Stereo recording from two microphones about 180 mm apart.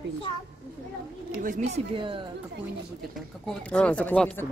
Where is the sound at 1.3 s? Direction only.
45° right (ahead or behind); by 2.2 s 30° right (ahead or behind).